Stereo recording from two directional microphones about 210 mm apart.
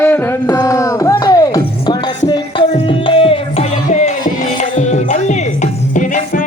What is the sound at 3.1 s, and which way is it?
Music, 25° left (ahead or behind).